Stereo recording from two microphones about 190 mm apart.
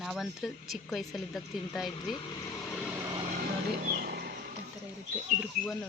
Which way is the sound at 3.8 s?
55° right (ahead or behind).